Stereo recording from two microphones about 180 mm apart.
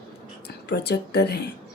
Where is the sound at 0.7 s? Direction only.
65° left (ahead or behind).